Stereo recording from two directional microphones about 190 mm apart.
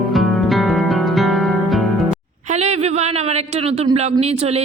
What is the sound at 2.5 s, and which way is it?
Speech, 35° right (ahead or behind).